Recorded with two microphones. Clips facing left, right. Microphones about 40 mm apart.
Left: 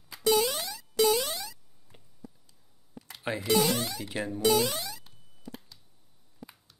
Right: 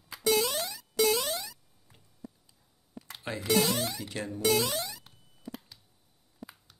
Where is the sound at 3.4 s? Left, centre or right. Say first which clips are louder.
Left 1 dB; centre.